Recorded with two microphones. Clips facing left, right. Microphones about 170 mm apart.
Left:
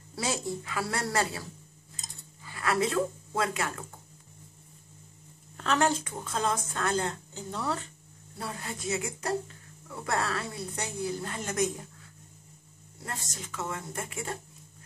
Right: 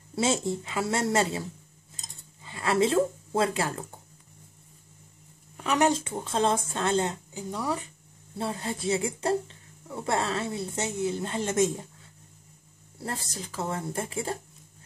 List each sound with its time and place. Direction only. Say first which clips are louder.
0.1 s speech: right 6 dB; 25° right (ahead or behind)
5.6 s speech: right 3 dB; 15° right (ahead or behind)
8.4 s speech: right 6 dB; 25° right (ahead or behind)
13.0 s speech: right 5 dB; 30° right (ahead or behind)